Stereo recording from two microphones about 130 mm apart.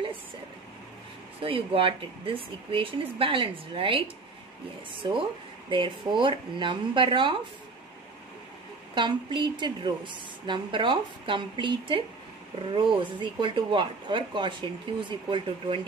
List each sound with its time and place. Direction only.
1.4 s speech: 45° right (ahead or behind)
5.7 s a woman's voice: 40° right (ahead or behind)
8.9 s a woman's voice: 35° right (ahead or behind)